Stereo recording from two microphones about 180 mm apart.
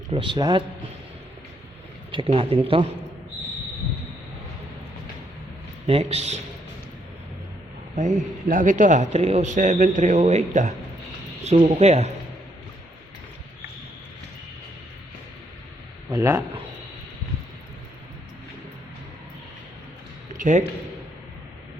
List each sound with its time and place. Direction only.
0.1 s a man's voice: 25° right (ahead or behind)
2.1 s speech: 30° right (ahead or behind)
5.8 s speech: 35° right (ahead or behind)
7.9 s a man's voice: 45° right (ahead or behind)
16.0 s speech: 15° right (ahead or behind)
20.4 s a man's voice: 45° right (ahead or behind)